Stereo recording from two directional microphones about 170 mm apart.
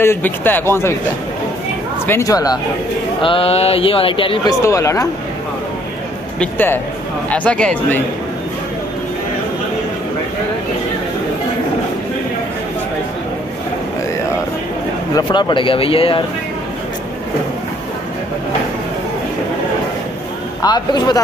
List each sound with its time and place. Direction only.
0.0 s a man's voice: 15° left (ahead or behind)
2.0 s a man's voice: 15° left (ahead or behind)
3.2 s speech: 30° left (ahead or behind)
4.5 s a man's voice: 20° left (ahead or behind)
6.4 s a man's voice: 10° left (ahead or behind)
15.1 s speech: 25° left (ahead or behind)
20.6 s a man's voice: 25° left (ahead or behind)